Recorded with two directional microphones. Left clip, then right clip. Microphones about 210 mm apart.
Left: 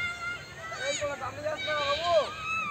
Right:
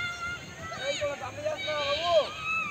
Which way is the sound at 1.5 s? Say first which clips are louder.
Left 1 dB; centre (ahead or behind).